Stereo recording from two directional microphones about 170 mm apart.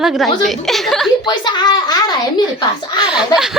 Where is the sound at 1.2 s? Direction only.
25° left (ahead or behind).